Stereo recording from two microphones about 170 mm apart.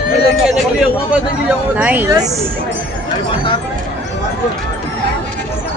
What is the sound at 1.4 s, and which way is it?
Speech, 10° right (ahead or behind).